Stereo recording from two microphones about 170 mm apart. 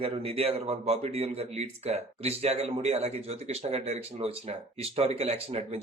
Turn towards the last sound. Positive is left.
turn(degrees=-35)  # may be behind; listen again after turning